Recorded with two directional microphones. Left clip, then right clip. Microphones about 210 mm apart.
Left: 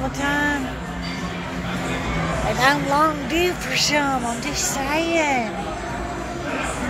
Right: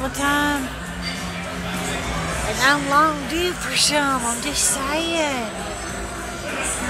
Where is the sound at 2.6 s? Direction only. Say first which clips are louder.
Right 2 dB; 5° right (ahead or behind).